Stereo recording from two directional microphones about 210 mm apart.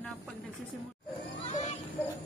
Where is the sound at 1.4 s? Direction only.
30° left (ahead or behind).